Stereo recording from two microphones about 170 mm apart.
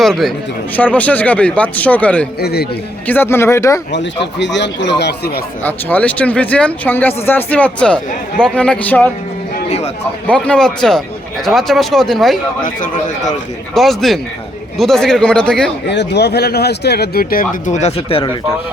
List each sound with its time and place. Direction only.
0.0 s speech: centre (ahead or behind)
2.4 s speech: 70° left (ahead or behind)
3.1 s speech: 15° left (ahead or behind)
3.9 s speech: 90° left; by 5.4 s 75° left (ahead or behind)
5.6 s speech: 10° left (ahead or behind)
9.6 s a man's voice: 40° left (ahead or behind)
10.2 s speech: 5° left (ahead or behind)
13.7 s speech: centre (ahead or behind)
15.9 s speech: 85° left; by 18.3 s 35° left (ahead or behind)